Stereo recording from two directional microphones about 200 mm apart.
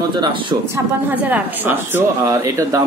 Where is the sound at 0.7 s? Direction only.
10° right (ahead or behind).